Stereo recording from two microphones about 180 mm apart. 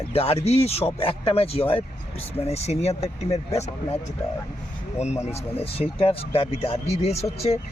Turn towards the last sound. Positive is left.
turn(degrees=35)  # may be behind; listen again after turning